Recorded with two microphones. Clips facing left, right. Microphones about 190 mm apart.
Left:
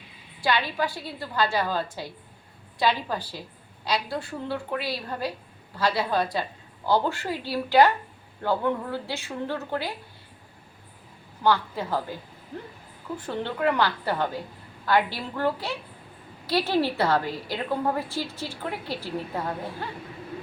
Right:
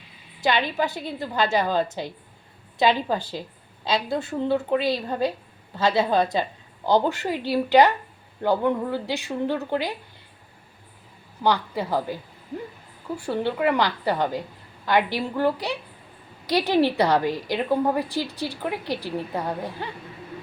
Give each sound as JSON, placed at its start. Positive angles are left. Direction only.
{"t": 0.4, "sound": "a woman's voice", "side_deg": -20}
{"t": 11.4, "sound": "a woman's voice", "side_deg": -15}
{"t": 13.1, "sound": "a woman's voice", "side_deg": -10}